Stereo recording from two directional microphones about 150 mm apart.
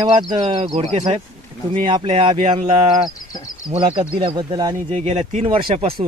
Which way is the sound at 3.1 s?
25° left (ahead or behind).